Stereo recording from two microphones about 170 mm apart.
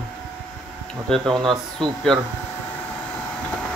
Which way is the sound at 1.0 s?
Centre (ahead or behind).